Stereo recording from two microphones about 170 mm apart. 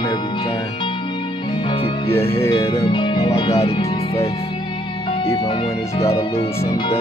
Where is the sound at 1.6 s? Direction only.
35° left (ahead or behind).